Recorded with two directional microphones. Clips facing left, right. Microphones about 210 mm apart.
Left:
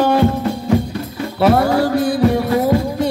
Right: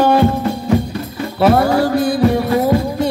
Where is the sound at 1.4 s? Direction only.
40° right (ahead or behind).